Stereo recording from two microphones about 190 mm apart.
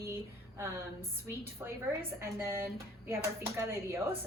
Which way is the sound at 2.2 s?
10° right (ahead or behind).